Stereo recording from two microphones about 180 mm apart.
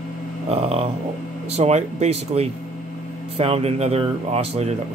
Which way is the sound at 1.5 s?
40° right (ahead or behind).